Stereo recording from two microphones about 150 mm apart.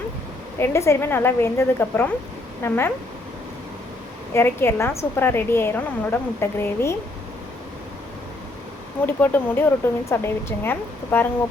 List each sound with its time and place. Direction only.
0.6 s a woman's voice: 20° left (ahead or behind)
4.4 s a woman's voice: 15° left (ahead or behind)
9.0 s a woman's voice: 15° left (ahead or behind)